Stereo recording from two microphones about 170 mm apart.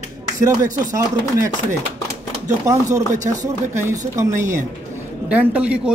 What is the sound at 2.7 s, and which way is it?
Speech, 20° right (ahead or behind).